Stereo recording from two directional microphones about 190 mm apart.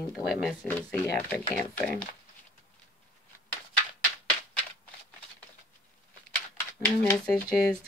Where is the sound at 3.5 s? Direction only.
10° left (ahead or behind).